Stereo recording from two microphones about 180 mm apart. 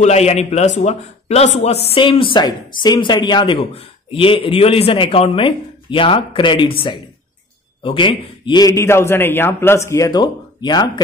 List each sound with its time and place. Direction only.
0.0 s a man's voice: 35° left (ahead or behind)